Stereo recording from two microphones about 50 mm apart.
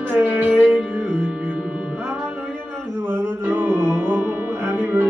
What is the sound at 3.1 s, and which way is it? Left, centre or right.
Music, right.